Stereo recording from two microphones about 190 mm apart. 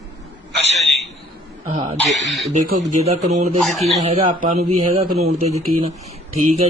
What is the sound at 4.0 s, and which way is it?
A man's voice, 35° right (ahead or behind).